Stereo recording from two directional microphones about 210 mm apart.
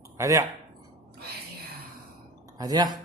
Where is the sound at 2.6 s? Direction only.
20° right (ahead or behind).